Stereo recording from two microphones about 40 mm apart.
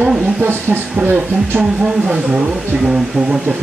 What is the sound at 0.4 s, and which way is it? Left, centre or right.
Speech, right.